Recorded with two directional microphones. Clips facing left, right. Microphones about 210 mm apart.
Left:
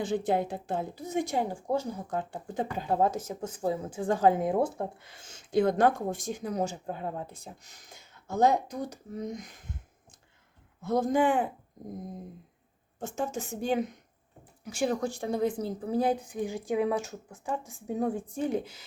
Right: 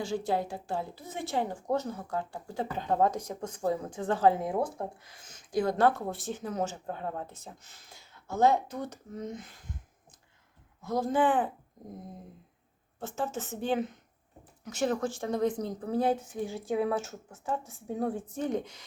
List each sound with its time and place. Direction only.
0.0 s a woman's voice: 20° left (ahead or behind)
10.8 s a woman's voice: 20° left (ahead or behind)
13.0 s a woman's voice: 15° left (ahead or behind)